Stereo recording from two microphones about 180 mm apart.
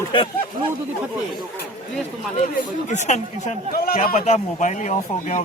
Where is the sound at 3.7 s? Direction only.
55° left (ahead or behind).